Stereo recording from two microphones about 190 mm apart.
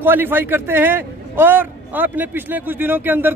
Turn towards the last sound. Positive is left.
turn(degrees=-10)  # may be behind; listen again after turning